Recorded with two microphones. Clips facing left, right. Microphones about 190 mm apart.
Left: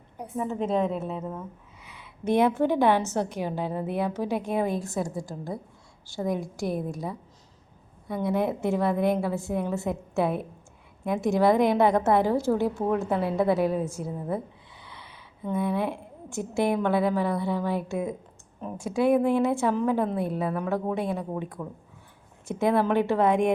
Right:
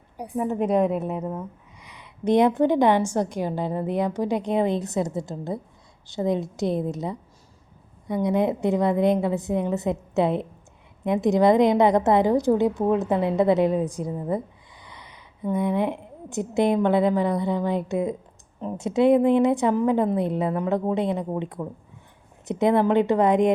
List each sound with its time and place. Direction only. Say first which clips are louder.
0.3 s a woman's voice: right 4 dB; 15° right (ahead or behind)